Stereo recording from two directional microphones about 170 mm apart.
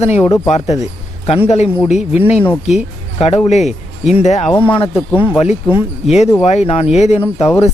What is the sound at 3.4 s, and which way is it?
Speech, 40° left (ahead or behind).